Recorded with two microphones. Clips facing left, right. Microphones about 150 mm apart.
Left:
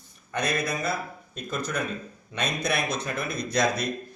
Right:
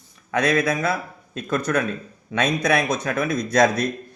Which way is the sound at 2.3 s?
90° right.